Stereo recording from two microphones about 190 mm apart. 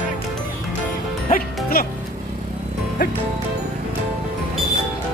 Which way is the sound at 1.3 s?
50° left (ahead or behind).